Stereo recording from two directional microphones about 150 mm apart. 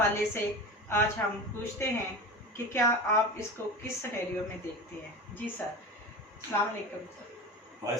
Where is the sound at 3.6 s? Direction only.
15° left (ahead or behind).